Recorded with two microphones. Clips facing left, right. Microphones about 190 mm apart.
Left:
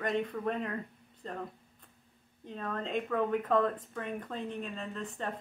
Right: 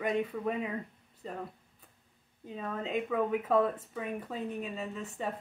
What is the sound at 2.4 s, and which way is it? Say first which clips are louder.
Speech: even; 5° right (ahead or behind).